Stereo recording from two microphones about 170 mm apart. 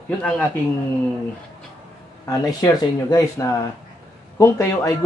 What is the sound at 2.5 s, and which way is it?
Speech, 20° left (ahead or behind).